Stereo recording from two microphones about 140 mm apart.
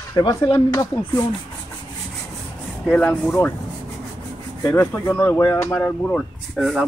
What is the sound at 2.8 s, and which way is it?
Speech, 10° left (ahead or behind).